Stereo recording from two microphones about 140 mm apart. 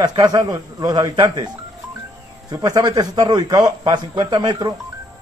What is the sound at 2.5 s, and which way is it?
A man's voice, 25° right (ahead or behind).